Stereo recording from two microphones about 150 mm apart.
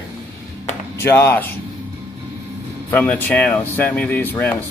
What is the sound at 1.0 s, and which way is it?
Speech, 15° left (ahead or behind).